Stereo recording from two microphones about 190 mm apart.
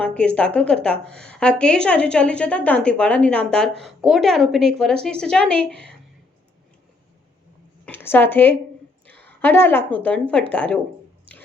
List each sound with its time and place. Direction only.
0.0 s a woman's voice: 5° left (ahead or behind)
7.9 s a woman's voice: 10° left (ahead or behind)